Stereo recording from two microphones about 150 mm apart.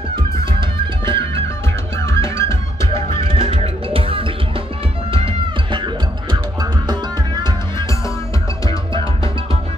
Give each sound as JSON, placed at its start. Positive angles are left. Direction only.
{"t": 0.1, "sound": "music", "side_deg": -35}
{"t": 2.0, "sound": "music", "side_deg": 20}
{"t": 3.2, "sound": "music", "side_deg": -35}